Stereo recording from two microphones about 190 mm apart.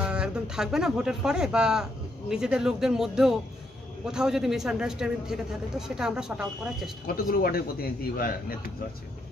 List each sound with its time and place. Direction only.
0.0 s speech: 5° right (ahead or behind)
7.2 s a man's voice: 50° left (ahead or behind)